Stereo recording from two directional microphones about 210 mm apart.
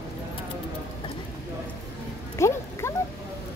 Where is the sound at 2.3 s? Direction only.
15° left (ahead or behind).